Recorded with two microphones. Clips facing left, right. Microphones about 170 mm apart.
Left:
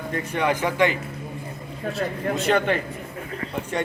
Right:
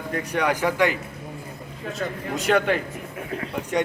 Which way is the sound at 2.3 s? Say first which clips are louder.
Right 1 dB; 5° right (ahead or behind).